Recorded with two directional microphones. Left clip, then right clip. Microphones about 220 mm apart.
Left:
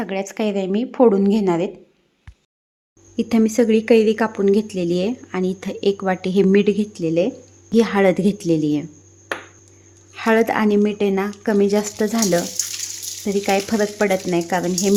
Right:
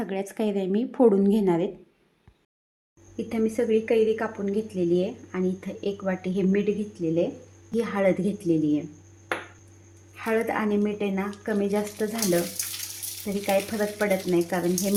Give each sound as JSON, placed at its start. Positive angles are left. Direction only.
{"t": 0.0, "sound": "a woman's voice", "side_deg": 5}
{"t": 3.2, "sound": "a woman's voice", "side_deg": 50}
{"t": 10.2, "sound": "a woman's voice", "side_deg": 50}
{"t": 13.4, "sound": "a woman's voice", "side_deg": 50}